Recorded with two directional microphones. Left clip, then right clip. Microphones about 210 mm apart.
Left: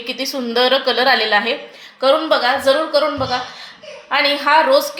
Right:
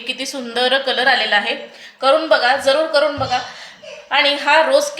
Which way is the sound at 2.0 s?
20° left (ahead or behind).